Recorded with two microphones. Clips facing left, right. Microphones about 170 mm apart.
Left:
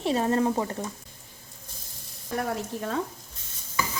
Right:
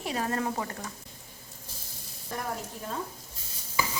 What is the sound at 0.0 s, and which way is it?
Speech, 25° left (ahead or behind).